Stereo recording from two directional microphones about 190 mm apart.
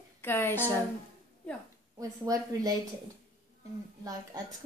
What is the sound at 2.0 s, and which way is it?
Speech, 20° right (ahead or behind).